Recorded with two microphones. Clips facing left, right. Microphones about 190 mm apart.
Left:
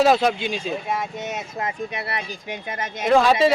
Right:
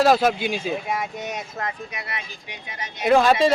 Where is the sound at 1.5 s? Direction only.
25° left (ahead or behind).